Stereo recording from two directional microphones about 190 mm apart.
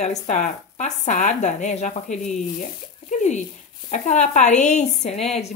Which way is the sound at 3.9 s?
40° left (ahead or behind).